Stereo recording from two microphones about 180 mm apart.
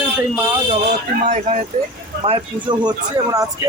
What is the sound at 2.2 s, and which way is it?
Speech, 30° right (ahead or behind).